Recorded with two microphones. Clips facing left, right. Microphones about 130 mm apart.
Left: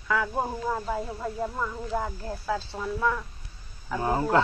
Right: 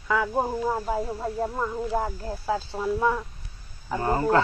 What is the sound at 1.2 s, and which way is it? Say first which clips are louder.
Speech: right 3 dB; 25° right (ahead or behind).